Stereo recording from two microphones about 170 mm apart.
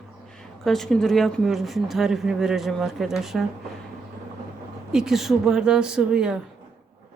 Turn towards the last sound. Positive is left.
turn(degrees=-5)  # may be behind; listen again after turning